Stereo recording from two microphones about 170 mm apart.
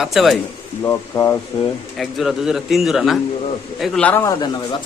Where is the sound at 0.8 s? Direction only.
20° left (ahead or behind).